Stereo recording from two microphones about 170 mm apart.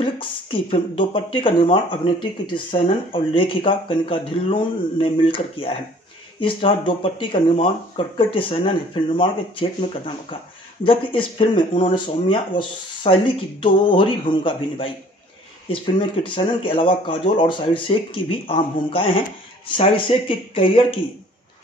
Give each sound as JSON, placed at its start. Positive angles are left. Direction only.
{"t": 0.0, "sound": "speech", "side_deg": 30}